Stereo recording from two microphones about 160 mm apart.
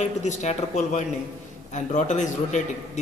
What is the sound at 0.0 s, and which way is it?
A man's voice, 45° left (ahead or behind).